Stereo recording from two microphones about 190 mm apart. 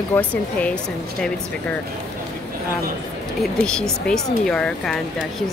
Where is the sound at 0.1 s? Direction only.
10° left (ahead or behind).